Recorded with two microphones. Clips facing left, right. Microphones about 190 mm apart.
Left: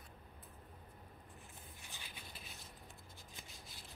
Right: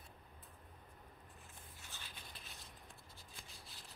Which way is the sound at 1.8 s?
15° left (ahead or behind).